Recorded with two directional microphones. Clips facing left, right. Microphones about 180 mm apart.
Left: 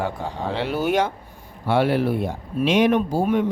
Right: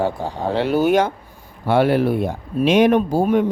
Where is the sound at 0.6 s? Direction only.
45° right (ahead or behind).